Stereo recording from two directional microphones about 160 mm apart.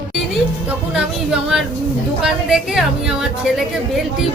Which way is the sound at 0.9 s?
5° right (ahead or behind).